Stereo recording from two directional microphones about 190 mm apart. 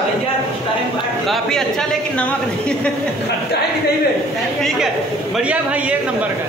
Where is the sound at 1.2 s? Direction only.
Centre (ahead or behind).